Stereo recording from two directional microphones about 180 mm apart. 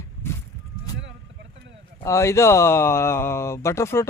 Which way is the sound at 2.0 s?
15° left (ahead or behind).